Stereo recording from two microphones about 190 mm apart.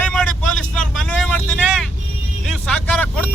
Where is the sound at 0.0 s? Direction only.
5° left (ahead or behind).